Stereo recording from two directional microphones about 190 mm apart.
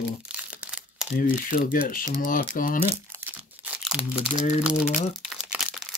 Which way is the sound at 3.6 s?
5° right (ahead or behind).